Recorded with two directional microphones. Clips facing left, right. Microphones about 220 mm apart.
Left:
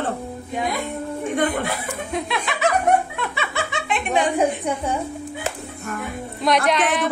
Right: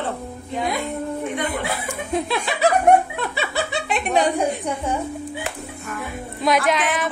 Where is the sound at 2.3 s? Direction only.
35° right (ahead or behind).